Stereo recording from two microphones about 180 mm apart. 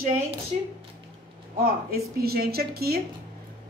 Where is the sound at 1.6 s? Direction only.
60° right (ahead or behind).